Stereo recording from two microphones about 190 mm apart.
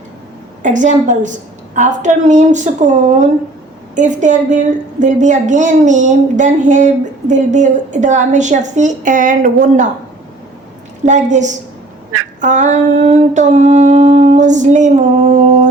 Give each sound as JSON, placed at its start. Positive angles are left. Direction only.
{"t": 0.6, "sound": "a woman's voice", "side_deg": -40}
{"t": 11.0, "sound": "a woman's voice", "side_deg": -40}